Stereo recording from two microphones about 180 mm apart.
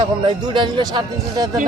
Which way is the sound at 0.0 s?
25° right (ahead or behind).